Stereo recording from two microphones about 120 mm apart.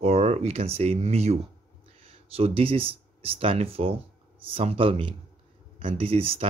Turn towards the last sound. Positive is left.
turn(degrees=-55)  # may be behind; listen again after turning